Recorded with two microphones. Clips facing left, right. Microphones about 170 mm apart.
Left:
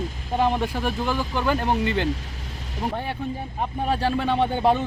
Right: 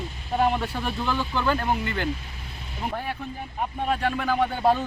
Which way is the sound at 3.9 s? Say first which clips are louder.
Left 2 dB; 30° left (ahead or behind).